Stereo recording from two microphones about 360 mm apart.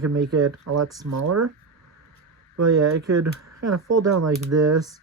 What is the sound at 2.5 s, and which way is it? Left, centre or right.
Speech, right.